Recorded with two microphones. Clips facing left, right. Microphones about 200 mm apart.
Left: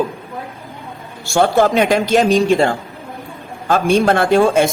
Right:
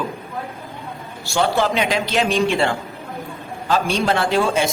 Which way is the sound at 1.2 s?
50° left (ahead or behind).